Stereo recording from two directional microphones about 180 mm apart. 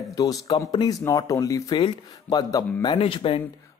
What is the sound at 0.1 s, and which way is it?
Speech, 20° left (ahead or behind).